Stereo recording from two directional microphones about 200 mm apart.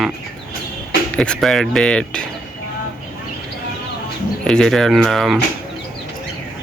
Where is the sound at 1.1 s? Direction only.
5° left (ahead or behind).